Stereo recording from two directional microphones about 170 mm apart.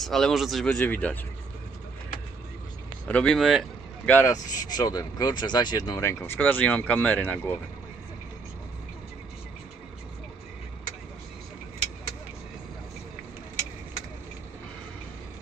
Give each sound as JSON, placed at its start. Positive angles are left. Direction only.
{"t": 0.0, "sound": "speech", "side_deg": 0}
{"t": 3.1, "sound": "speech", "side_deg": 5}